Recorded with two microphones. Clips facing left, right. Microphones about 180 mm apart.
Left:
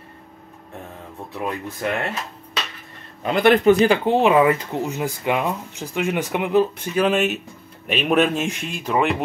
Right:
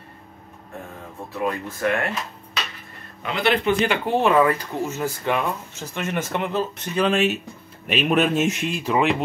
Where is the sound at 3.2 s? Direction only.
45° left (ahead or behind).